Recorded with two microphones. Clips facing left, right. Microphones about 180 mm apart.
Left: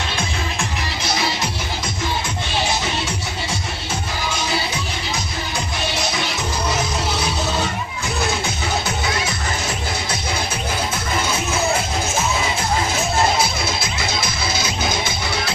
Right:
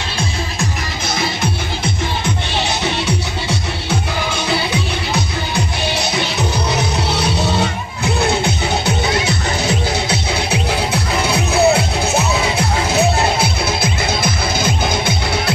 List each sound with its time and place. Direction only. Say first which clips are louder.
9.7 s music: right 7 dB; 70° right (ahead or behind)
14.2 s music: right 6 dB; 55° right (ahead or behind)